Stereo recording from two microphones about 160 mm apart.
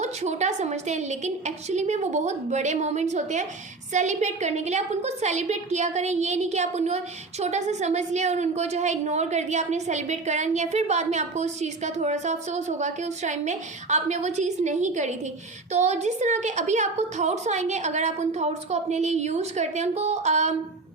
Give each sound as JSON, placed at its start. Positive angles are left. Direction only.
{"t": 0.0, "sound": "a woman's voice", "side_deg": -45}